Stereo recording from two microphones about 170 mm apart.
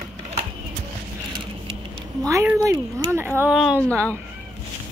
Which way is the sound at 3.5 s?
Centre (ahead or behind).